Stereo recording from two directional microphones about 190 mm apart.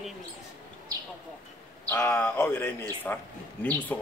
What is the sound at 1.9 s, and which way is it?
A man's voice, 10° left (ahead or behind).